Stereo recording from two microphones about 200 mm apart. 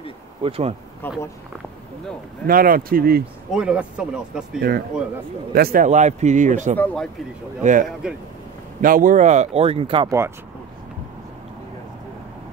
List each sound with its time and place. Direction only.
0.4 s speech: 30° right (ahead or behind)
1.0 s speech: 10° left (ahead or behind)
2.4 s speech: 45° right (ahead or behind)
3.5 s speech: 5° right (ahead or behind)
4.6 s a man's voice: 50° right (ahead or behind)
6.8 s speech: 5° left (ahead or behind)
7.6 s a man's voice: 40° right (ahead or behind); by 10.1 s 25° right (ahead or behind)